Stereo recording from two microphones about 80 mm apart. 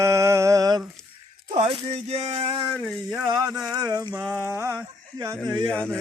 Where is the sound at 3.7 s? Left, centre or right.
Right.